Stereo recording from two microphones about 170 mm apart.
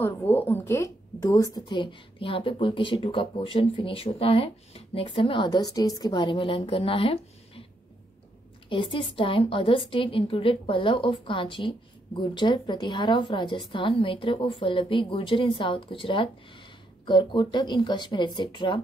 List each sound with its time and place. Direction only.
0.0 s a woman's voice: 10° left (ahead or behind); by 7.6 s 35° left (ahead or behind)
8.6 s a woman's voice: 30° left (ahead or behind)